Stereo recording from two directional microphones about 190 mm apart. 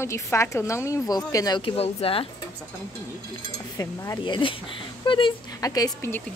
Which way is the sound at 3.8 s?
20° left (ahead or behind).